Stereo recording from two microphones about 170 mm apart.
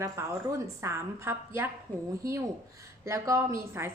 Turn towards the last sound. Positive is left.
turn(degrees=-15)  # may be behind; listen again after turning